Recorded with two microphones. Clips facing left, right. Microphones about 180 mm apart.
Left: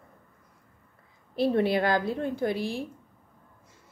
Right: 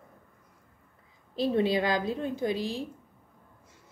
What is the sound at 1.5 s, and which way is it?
A woman's voice, 15° right (ahead or behind).